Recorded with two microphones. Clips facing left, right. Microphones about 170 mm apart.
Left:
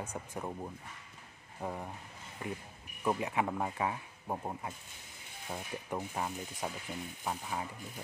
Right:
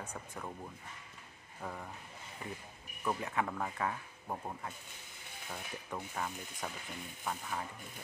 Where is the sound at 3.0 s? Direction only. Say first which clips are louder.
Left 3 dB; 20° left (ahead or behind).